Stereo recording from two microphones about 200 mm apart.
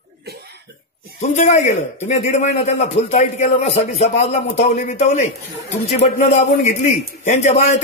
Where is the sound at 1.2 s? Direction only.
35° left (ahead or behind).